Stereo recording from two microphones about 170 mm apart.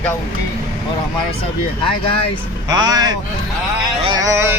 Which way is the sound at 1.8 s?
30° left (ahead or behind).